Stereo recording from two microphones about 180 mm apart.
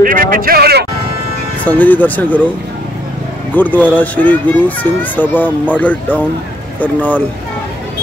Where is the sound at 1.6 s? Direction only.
10° left (ahead or behind).